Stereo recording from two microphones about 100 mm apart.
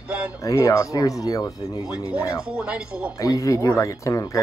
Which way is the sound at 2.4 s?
10° right (ahead or behind).